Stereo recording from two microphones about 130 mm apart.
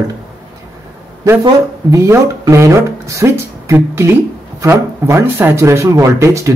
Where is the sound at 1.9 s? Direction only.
20° right (ahead or behind).